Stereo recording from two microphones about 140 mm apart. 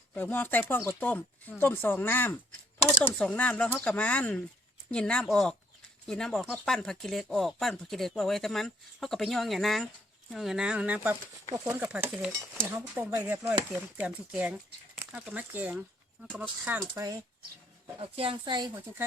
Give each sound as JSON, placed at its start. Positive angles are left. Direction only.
{"t": 0.1, "sound": "speech", "side_deg": 15}
{"t": 16.9, "sound": "speech", "side_deg": -25}
{"t": 18.0, "sound": "speech", "side_deg": -40}